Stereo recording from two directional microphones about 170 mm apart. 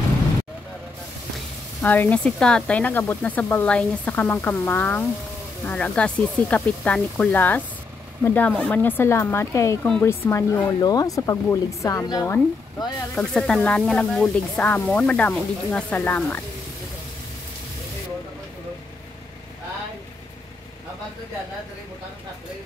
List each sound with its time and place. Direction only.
1.8 s speech: 10° left (ahead or behind)
13.2 s speech: 5° left (ahead or behind)